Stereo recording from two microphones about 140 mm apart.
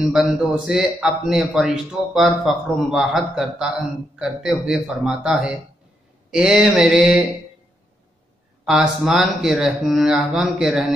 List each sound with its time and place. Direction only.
0.0 s a man's voice: centre (ahead or behind)
8.6 s a man's voice: 5° right (ahead or behind)